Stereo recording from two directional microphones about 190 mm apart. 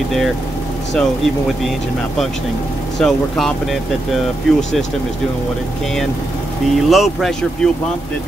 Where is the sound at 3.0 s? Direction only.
Centre (ahead or behind).